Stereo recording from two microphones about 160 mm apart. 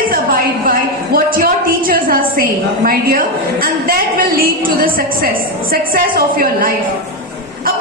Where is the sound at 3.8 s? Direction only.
65° right (ahead or behind).